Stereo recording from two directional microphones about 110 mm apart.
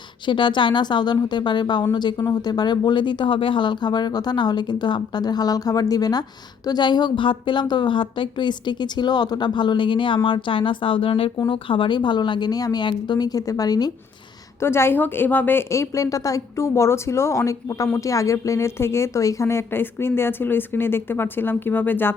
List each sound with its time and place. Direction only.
0.3 s a woman's voice: 45° left (ahead or behind)
14.6 s a woman's voice: 25° left (ahead or behind)